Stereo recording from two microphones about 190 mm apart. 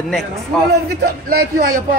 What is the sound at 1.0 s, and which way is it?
Speech, 50° right (ahead or behind).